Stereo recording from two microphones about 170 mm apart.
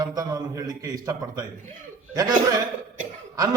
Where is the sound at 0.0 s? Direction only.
20° right (ahead or behind).